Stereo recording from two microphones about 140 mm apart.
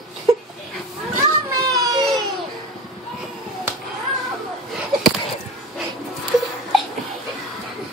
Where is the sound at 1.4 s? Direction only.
25° right (ahead or behind).